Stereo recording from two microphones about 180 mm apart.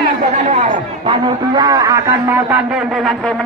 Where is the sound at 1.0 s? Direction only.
25° right (ahead or behind).